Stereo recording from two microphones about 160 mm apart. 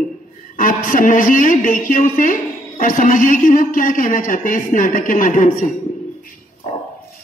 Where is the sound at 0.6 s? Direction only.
55° left (ahead or behind).